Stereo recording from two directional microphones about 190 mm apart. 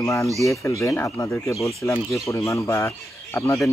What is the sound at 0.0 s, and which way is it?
Speech, 15° left (ahead or behind).